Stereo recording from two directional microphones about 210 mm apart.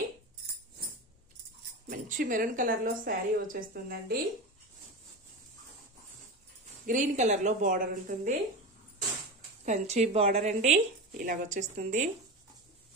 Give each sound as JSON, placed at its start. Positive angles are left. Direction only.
{"t": 1.9, "sound": "speech", "side_deg": -40}
{"t": 6.9, "sound": "speech", "side_deg": -35}
{"t": 9.7, "sound": "speech", "side_deg": -35}